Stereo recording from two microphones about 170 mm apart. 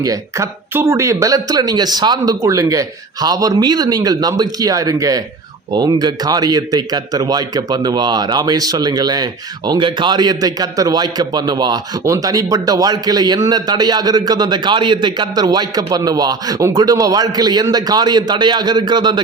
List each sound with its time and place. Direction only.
0.0 s speech: 20° right (ahead or behind)